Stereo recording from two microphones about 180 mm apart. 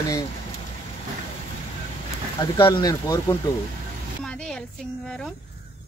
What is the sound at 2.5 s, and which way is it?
Speech, 25° left (ahead or behind).